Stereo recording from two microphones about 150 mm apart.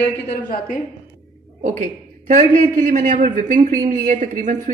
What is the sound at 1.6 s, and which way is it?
Speech, 60° right (ahead or behind).